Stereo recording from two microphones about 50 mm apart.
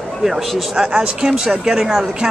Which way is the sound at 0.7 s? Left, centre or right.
Centre.